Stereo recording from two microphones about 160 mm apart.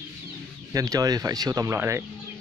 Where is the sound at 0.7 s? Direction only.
20° right (ahead or behind).